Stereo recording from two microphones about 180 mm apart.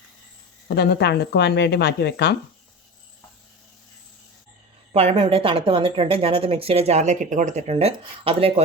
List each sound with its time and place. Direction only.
0.7 s speech: 65° left (ahead or behind)
4.9 s a woman's voice: 35° right (ahead or behind)